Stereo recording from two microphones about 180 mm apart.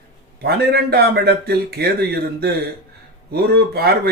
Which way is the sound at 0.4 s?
60° right (ahead or behind).